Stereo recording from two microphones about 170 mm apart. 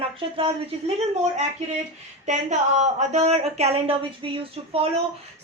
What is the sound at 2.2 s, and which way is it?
A woman's voice, 45° right (ahead or behind).